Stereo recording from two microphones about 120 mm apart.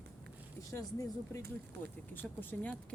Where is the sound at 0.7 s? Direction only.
25° left (ahead or behind).